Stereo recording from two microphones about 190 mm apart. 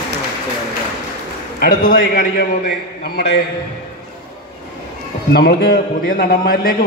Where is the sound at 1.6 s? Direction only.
50° left (ahead or behind).